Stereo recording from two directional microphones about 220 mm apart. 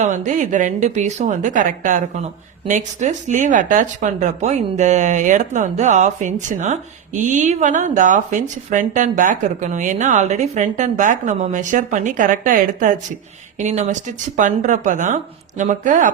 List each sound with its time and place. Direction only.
0.0 s speech: 35° right (ahead or behind)